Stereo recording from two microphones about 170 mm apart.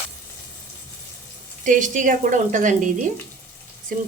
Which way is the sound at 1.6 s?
50° right (ahead or behind).